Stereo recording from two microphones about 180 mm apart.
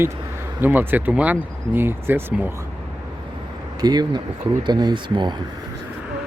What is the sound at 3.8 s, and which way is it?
Speech, 20° right (ahead or behind).